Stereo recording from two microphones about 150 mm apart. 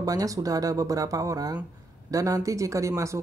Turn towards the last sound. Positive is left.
turn(degrees=-20)  # may be behind; listen again after turning